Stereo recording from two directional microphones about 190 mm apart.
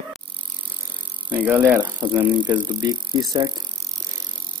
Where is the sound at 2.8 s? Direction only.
20° right (ahead or behind).